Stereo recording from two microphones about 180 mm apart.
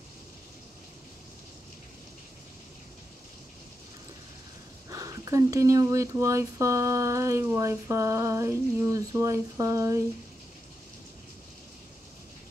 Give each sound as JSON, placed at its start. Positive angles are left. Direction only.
{"t": 4.8, "sound": "speech", "side_deg": -20}